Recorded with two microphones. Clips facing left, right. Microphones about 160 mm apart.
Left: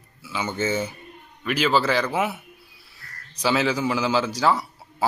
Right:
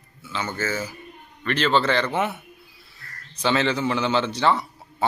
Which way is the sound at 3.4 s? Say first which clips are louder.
Even; 5° left (ahead or behind).